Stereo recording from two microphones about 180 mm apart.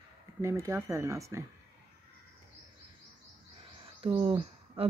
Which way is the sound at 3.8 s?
30° right (ahead or behind).